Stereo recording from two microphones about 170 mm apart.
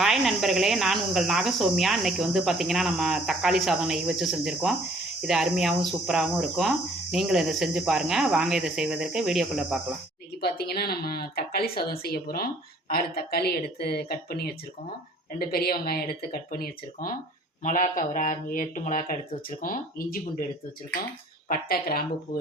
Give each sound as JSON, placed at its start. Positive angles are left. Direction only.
{"t": 0.0, "sound": "speech", "side_deg": 0}
{"t": 10.4, "sound": "speech", "side_deg": 70}
{"t": 17.6, "sound": "speech", "side_deg": 50}
{"t": 21.5, "sound": "speech", "side_deg": 60}